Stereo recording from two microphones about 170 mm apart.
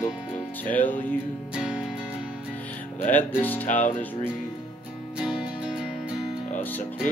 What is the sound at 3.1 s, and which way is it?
Speech, 10° left (ahead or behind).